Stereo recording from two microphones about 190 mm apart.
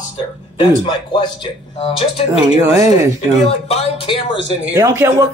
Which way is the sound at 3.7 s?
30° left (ahead or behind).